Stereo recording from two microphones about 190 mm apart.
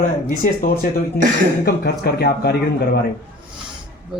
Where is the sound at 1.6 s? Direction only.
60° left (ahead or behind).